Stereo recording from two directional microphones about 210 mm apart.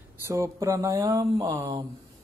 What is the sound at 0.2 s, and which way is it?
Speech, 15° right (ahead or behind).